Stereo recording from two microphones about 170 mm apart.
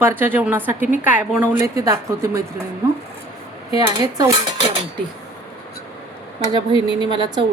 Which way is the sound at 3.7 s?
20° right (ahead or behind).